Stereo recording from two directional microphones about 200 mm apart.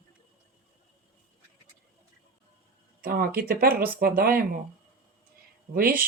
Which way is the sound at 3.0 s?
45° right (ahead or behind).